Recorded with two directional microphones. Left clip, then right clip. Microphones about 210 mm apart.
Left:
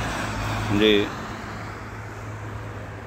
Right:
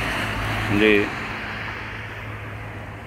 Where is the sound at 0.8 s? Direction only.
Centre (ahead or behind).